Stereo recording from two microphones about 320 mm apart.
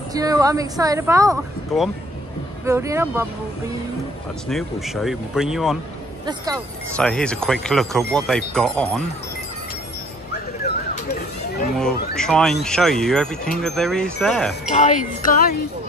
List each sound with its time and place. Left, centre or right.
0.1 s speech: centre
7.0 s speech: centre
12.2 s speech: centre
14.7 s wind chime: left